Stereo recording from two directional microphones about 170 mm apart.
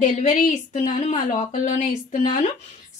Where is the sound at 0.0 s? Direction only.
45° left (ahead or behind).